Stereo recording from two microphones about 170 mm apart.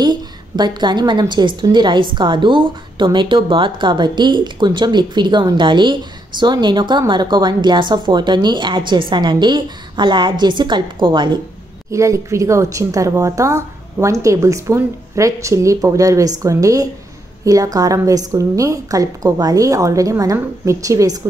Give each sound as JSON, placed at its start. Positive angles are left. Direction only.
{"t": 0.0, "sound": "a woman's voice", "side_deg": -25}
{"t": 11.9, "sound": "a woman's voice", "side_deg": -15}